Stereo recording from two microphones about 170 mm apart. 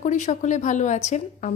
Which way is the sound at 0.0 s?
45° left (ahead or behind).